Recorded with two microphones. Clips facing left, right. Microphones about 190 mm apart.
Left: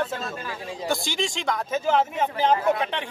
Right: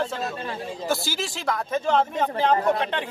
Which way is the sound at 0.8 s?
5° right (ahead or behind).